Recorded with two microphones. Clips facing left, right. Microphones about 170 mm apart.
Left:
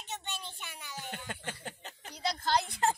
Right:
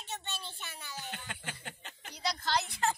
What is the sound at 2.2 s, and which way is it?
Speech, 50° left (ahead or behind).